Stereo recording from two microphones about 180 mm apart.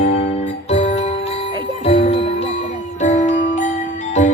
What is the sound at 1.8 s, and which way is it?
Jingle bell, 35° left (ahead or behind).